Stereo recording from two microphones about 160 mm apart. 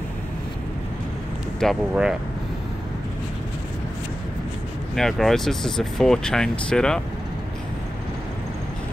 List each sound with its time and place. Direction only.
1.6 s speech: centre (ahead or behind)
4.9 s speech: 5° left (ahead or behind)